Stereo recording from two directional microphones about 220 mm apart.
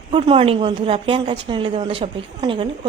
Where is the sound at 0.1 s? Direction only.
25° right (ahead or behind).